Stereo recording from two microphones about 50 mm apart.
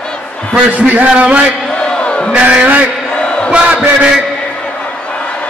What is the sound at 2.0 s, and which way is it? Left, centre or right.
Crowd, left.